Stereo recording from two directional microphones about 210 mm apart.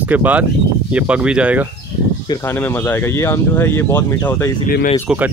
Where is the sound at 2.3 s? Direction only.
10° left (ahead or behind).